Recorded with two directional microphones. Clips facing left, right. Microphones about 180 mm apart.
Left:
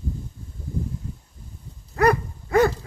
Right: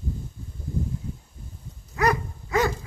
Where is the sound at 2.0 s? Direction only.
55° left (ahead or behind).